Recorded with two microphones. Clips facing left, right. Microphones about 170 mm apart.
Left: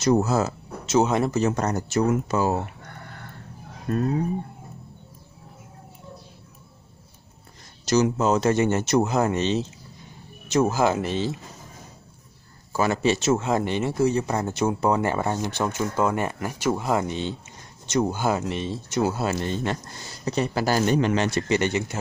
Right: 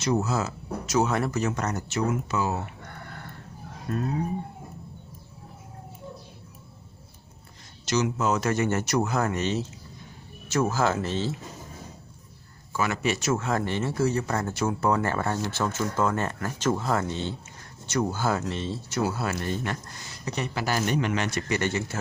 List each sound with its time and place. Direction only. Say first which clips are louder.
0.0 s speech: left 5 dB; 40° left (ahead or behind)
0.8 s speech: left 4 dB; 20° left (ahead or behind)
1.4 s speech: left 5 dB; 35° left (ahead or behind)
7.8 s speech: left 5 dB; 40° left (ahead or behind); by 11.3 s 15° left (ahead or behind)
12.7 s speech: left 5 dB; 35° left (ahead or behind)